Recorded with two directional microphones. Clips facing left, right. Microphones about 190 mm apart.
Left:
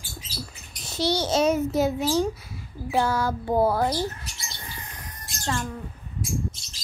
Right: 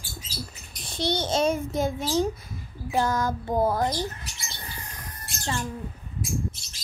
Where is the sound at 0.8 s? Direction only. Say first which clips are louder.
Left 2 dB; 5° left (ahead or behind).